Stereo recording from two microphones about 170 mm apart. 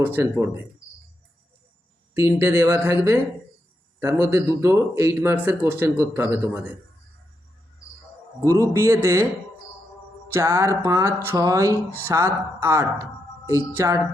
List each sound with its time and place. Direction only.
0.0 s speech: 15° right (ahead or behind)
2.1 s speech: 15° right (ahead or behind)
8.4 s speech: 20° right (ahead or behind)
10.3 s speech: 15° right (ahead or behind)